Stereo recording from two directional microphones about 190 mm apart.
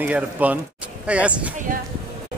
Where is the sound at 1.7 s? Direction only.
45° right (ahead or behind).